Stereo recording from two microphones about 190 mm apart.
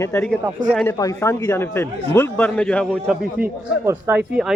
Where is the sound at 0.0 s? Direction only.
15° left (ahead or behind).